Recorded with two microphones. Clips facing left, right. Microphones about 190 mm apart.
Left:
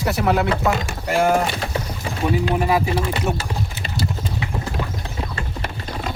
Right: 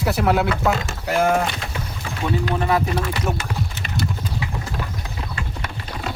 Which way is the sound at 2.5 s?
10° left (ahead or behind).